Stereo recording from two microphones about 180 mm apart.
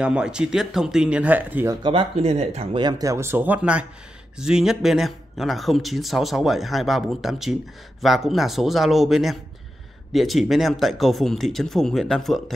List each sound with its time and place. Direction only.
0.0 s speech: 5° right (ahead or behind)
1.8 s speech: 30° right (ahead or behind); by 12.5 s centre (ahead or behind)